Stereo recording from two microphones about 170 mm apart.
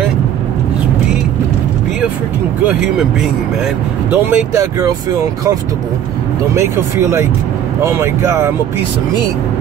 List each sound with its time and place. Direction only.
2.6 s speech: 5° right (ahead or behind)
4.1 s speech: 15° right (ahead or behind)
6.5 s speech: 15° right (ahead or behind)